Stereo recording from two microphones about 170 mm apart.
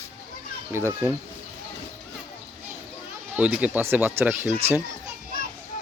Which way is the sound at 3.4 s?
10° right (ahead or behind).